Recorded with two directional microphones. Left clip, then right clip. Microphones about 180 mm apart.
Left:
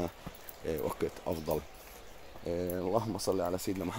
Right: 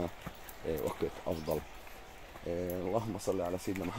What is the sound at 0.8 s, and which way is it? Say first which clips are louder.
Speech: left 1 dB; 15° left (ahead or behind).